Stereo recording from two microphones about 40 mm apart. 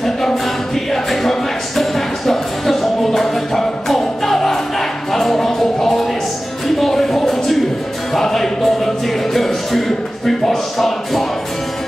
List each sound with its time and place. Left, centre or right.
0.9 s music: centre